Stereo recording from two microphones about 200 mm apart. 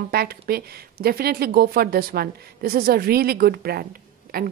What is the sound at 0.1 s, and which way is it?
A woman's voice, 50° right (ahead or behind).